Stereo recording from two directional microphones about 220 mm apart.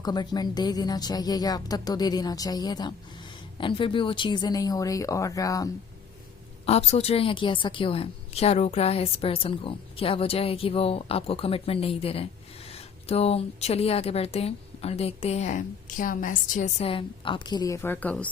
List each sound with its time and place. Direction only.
0.0 s a woman's voice: 20° left (ahead or behind)
6.7 s speech: 30° left (ahead or behind); by 18.3 s 5° left (ahead or behind)